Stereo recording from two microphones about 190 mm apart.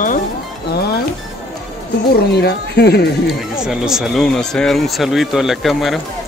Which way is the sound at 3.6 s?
5° right (ahead or behind).